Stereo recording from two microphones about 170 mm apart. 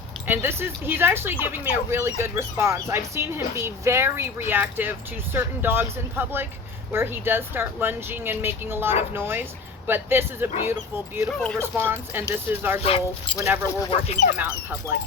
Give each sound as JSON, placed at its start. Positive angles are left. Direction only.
{"t": 0.3, "sound": "speech", "side_deg": -15}
{"t": 12.8, "sound": "speech", "side_deg": 35}
{"t": 13.3, "sound": "speech", "side_deg": -15}
{"t": 13.9, "sound": "speech", "side_deg": 40}